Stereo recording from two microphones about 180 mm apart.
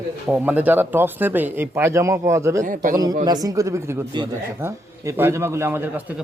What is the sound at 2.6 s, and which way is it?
Speech, 45° right (ahead or behind).